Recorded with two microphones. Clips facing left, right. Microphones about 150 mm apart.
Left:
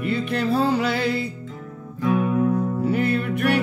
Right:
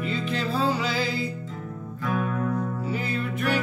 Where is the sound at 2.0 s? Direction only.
15° left (ahead or behind).